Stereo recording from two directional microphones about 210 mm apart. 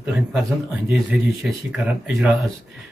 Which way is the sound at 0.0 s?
5° right (ahead or behind).